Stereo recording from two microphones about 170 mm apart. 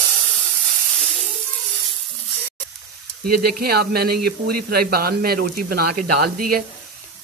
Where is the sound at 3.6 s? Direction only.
65° right (ahead or behind).